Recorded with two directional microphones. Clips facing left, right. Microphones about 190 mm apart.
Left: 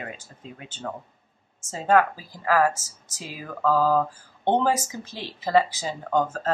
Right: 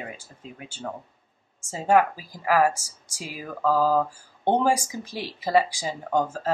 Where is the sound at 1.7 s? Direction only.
15° right (ahead or behind).